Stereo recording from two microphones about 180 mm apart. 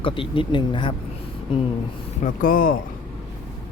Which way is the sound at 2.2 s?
50° left (ahead or behind).